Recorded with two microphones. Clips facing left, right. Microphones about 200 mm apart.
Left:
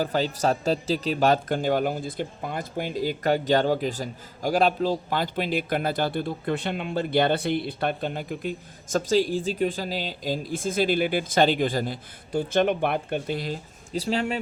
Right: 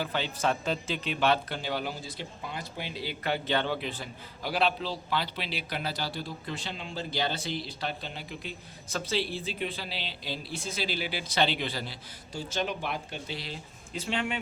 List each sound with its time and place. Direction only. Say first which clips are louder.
0.0 s speech: left 6 dB; 40° left (ahead or behind)